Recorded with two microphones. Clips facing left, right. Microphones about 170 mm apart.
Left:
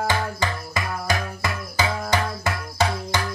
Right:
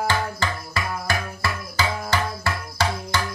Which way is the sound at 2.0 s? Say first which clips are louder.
Left 1 dB; 20° left (ahead or behind).